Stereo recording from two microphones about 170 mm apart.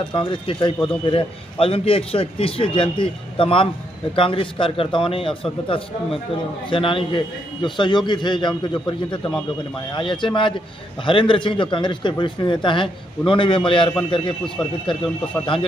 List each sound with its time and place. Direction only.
0.1 s a man's voice: 30° left (ahead or behind)